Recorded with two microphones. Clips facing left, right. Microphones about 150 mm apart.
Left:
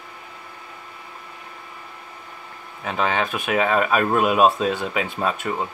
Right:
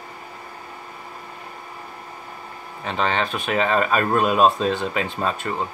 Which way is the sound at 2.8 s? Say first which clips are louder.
Even; 10° left (ahead or behind).